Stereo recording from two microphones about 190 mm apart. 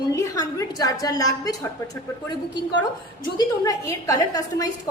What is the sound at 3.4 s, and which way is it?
A woman's voice, 20° left (ahead or behind).